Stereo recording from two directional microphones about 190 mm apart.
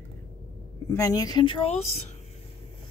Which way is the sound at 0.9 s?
20° left (ahead or behind).